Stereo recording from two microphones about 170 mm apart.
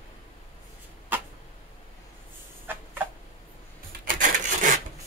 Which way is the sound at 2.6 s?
10° right (ahead or behind).